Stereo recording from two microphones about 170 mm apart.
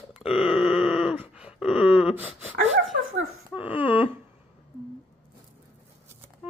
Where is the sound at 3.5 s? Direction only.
10° right (ahead or behind).